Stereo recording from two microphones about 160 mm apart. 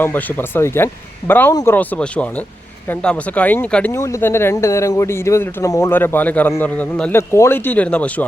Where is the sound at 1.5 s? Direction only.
25° left (ahead or behind).